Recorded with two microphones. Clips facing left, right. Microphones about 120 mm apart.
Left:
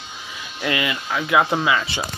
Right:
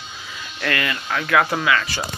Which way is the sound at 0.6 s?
15° left (ahead or behind).